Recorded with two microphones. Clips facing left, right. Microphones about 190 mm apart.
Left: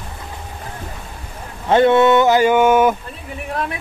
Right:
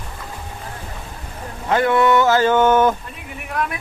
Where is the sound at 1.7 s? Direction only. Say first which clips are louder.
Left 4 dB; 25° left (ahead or behind); by 2.9 s 10° left (ahead or behind).